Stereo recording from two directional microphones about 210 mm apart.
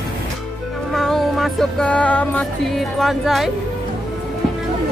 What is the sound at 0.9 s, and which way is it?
Music, centre (ahead or behind).